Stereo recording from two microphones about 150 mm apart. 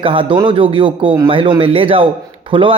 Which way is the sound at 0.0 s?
35° right (ahead or behind).